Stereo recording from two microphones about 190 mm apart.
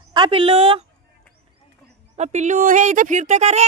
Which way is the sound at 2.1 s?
35° right (ahead or behind).